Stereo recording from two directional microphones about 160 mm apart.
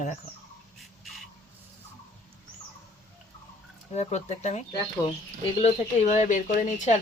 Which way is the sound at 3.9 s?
45° left (ahead or behind).